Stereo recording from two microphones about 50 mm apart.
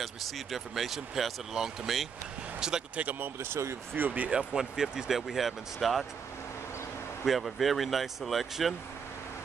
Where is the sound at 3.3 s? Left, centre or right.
Right.